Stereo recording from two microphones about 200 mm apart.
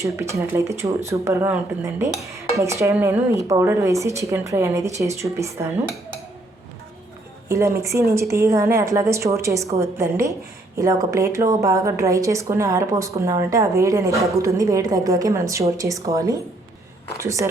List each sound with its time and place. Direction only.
0.0 s a woman's voice: 15° right (ahead or behind)
7.4 s a woman's voice: 15° right (ahead or behind)